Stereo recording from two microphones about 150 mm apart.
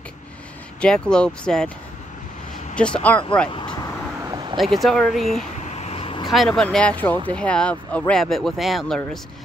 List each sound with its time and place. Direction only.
0.7 s speech: 5° left (ahead or behind)
2.7 s speech: 5° left (ahead or behind)
4.2 s vehicle: 30° right (ahead or behind)
4.6 s speech: centre (ahead or behind)
5.7 s vehicle: 45° left (ahead or behind)
6.3 s speech: centre (ahead or behind)